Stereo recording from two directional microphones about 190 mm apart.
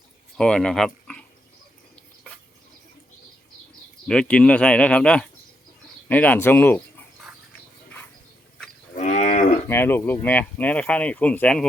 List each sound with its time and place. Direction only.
0.3 s speech: 5° left (ahead or behind)
4.0 s speech: 5° left (ahead or behind)
9.0 s moo: 40° left (ahead or behind)
9.6 s speech: 10° left (ahead or behind)